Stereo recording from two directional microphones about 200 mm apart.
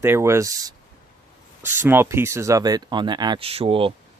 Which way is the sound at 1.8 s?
10° right (ahead or behind).